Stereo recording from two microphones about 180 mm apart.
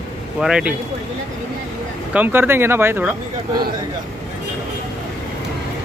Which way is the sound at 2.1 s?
10° right (ahead or behind).